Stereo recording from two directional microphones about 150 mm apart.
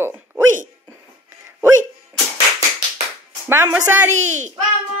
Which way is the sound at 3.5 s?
15° right (ahead or behind).